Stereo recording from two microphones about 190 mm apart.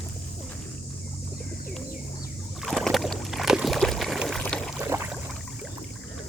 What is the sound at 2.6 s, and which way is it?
Water, centre (ahead or behind).